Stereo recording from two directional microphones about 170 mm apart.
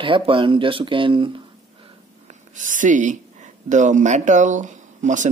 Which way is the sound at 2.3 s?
50° right (ahead or behind).